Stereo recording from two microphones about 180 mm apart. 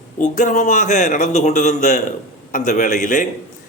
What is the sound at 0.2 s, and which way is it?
A man's voice, 45° left (ahead or behind).